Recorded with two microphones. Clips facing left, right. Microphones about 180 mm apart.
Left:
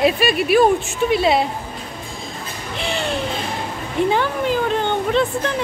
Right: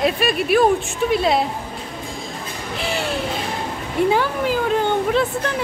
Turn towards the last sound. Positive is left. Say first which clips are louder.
# even
turn(degrees=-5)  # may be behind; listen again after turning